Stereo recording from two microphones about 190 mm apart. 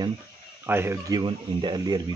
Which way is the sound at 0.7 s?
10° right (ahead or behind).